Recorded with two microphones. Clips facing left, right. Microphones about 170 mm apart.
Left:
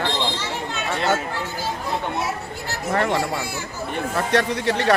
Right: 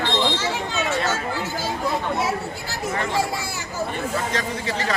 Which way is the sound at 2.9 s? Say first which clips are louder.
Left 3 dB; 60° left (ahead or behind).